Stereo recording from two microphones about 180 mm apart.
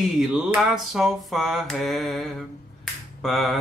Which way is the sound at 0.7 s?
Centre (ahead or behind).